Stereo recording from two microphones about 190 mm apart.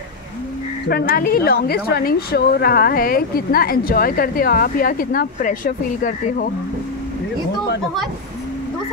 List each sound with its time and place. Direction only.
0.8 s a woman's voice: 50° left (ahead or behind)